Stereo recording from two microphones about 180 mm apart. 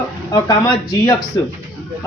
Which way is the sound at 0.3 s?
20° left (ahead or behind).